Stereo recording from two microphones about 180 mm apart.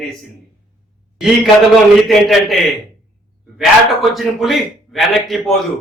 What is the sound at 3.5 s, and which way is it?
A man's voice, centre (ahead or behind).